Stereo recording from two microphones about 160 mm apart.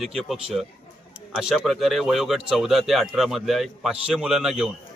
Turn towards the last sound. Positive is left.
turn(degrees=-5)  # may be behind; listen again after turning